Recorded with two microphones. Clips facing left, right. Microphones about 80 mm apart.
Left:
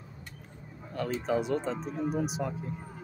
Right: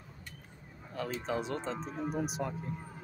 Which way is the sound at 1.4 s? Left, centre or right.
Centre.